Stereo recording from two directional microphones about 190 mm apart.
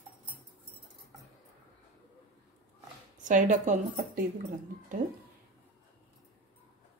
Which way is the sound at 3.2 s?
40° right (ahead or behind).